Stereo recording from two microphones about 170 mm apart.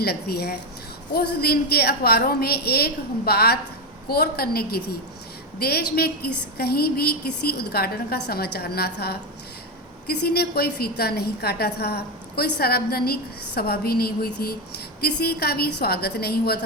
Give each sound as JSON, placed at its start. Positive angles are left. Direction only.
{"t": 0.0, "sound": "a woman's voice", "side_deg": 65}